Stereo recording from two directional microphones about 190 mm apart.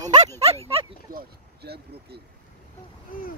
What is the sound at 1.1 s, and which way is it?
Speech, 55° right (ahead or behind).